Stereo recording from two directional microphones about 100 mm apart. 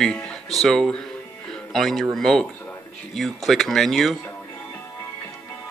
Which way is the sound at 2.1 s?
5° left (ahead or behind).